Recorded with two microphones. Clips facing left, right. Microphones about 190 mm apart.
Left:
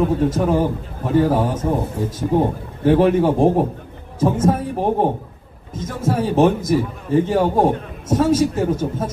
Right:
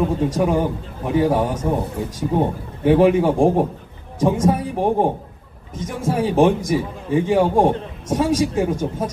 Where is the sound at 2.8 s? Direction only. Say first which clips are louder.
Even; 10° right (ahead or behind).